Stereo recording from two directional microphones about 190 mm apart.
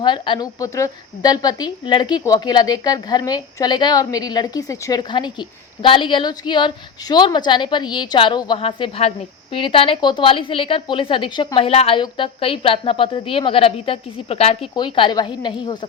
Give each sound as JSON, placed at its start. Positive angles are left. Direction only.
{"t": 0.0, "sound": "a woman's voice", "side_deg": 25}